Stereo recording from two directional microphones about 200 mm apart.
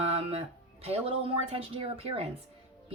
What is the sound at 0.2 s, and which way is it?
Speech, 30° right (ahead or behind).